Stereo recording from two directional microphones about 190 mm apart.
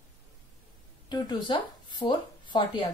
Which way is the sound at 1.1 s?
25° left (ahead or behind).